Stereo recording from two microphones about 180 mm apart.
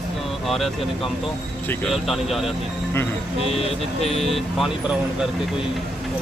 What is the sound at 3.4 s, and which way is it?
Speech, 35° left (ahead or behind).